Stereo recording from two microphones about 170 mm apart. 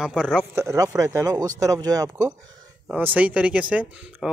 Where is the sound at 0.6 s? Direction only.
20° right (ahead or behind).